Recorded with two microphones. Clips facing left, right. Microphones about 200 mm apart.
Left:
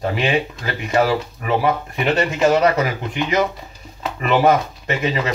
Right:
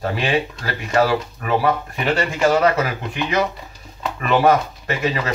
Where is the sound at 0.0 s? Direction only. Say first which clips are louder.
Left 1 dB; 20° left (ahead or behind).